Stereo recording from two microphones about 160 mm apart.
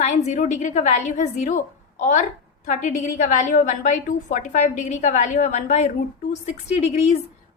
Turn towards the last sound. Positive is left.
turn(degrees=45)  # may be behind; listen again after turning